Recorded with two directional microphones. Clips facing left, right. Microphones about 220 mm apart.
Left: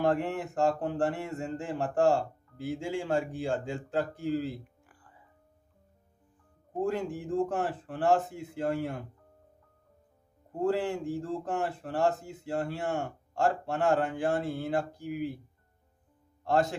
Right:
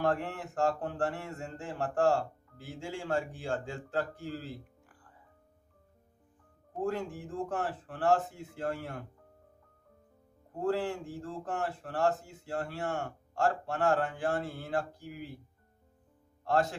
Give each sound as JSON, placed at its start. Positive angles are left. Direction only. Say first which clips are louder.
{"t": 0.0, "sound": "a man's voice", "louder": "left 4 dB", "side_deg": 20}
{"t": 4.8, "sound": "music", "louder": "left 1 dB", "side_deg": 5}
{"t": 6.9, "sound": "a man's voice", "louder": "left 5 dB", "side_deg": 20}
{"t": 10.6, "sound": "a man's voice", "louder": "left 3 dB", "side_deg": 20}